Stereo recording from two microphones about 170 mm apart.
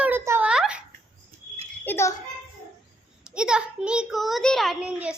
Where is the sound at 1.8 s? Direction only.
15° left (ahead or behind).